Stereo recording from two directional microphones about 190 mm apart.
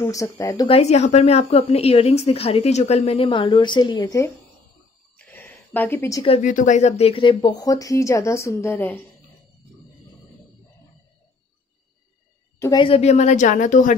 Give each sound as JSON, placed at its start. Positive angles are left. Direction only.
{"t": 0.0, "sound": "speech", "side_deg": 15}
{"t": 0.7, "sound": "a woman's voice", "side_deg": 35}
{"t": 5.1, "sound": "a sound", "side_deg": 10}
{"t": 6.2, "sound": "speech", "side_deg": 40}
{"t": 12.5, "sound": "a sound", "side_deg": 15}
{"t": 12.8, "sound": "a woman's voice", "side_deg": 30}